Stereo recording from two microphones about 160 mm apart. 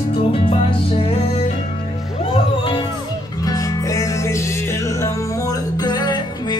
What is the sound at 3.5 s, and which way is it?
Music, 20° left (ahead or behind).